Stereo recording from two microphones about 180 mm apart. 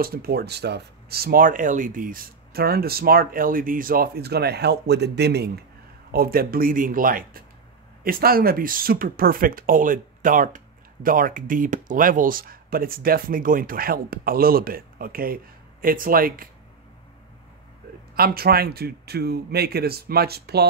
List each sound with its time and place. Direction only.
0.0 s speech: 55° right (ahead or behind)
6.1 s speech: 55° right (ahead or behind)
18.1 s speech: 55° right (ahead or behind)